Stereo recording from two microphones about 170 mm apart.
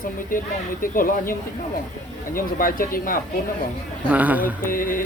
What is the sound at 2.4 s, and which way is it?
Speech, 55° left (ahead or behind).